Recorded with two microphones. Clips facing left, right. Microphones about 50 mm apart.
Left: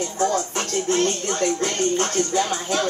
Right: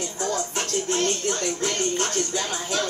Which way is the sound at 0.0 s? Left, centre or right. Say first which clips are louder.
Left 5 dB; left.